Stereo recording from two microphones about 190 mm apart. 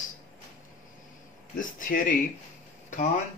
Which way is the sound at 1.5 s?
45° left (ahead or behind).